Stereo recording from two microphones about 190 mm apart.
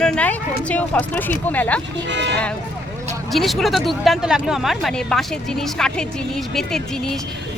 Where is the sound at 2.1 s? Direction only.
65° right (ahead or behind).